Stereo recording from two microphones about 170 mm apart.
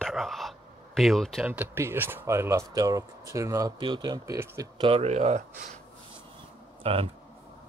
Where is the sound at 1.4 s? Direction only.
10° right (ahead or behind).